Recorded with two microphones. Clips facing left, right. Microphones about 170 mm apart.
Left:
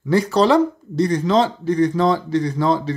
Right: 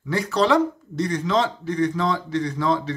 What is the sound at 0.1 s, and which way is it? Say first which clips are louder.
Speech: left 5 dB; 35° left (ahead or behind).